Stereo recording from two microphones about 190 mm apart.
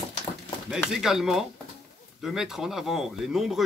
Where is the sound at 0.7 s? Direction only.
Centre (ahead or behind).